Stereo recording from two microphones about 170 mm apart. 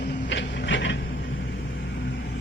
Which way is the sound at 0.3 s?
90° left.